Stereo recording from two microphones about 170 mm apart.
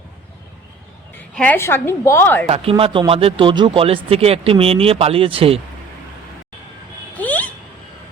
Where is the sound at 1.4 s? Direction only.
10° left (ahead or behind).